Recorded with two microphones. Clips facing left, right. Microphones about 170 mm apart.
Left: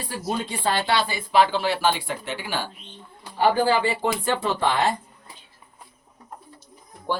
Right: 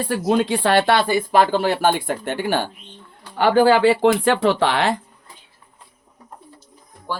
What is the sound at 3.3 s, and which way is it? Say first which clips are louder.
Speech: right 5 dB; 75° right (ahead or behind).